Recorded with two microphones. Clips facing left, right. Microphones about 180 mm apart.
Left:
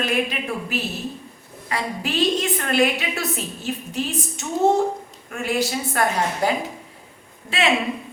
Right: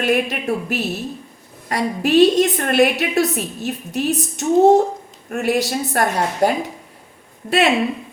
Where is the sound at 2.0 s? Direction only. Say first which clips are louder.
Right 10 dB; 65° right (ahead or behind).